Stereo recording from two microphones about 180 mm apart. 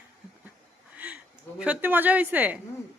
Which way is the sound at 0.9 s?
10° right (ahead or behind).